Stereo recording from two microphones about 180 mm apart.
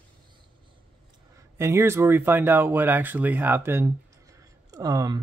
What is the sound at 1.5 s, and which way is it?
Speech, 15° right (ahead or behind).